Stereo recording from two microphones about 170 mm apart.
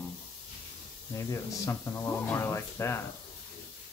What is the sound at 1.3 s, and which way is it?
Speech, 15° left (ahead or behind).